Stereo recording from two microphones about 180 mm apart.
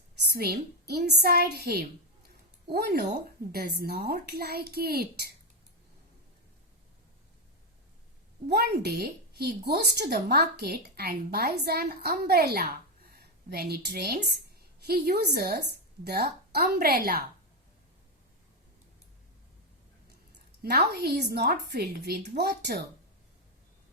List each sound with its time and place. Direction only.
0.2 s a woman's voice: 60° right (ahead or behind)
8.4 s a woman's voice: 65° right (ahead or behind)
20.6 s a woman's voice: 65° right (ahead or behind)